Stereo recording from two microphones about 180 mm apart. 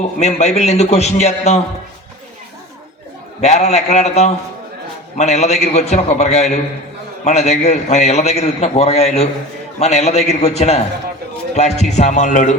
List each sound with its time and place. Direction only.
0.2 s a man's voice: 40° left (ahead or behind)
3.4 s a man's voice: 40° left (ahead or behind)